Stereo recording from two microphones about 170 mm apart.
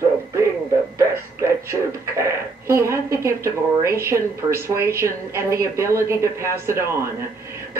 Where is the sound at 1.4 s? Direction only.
15° right (ahead or behind).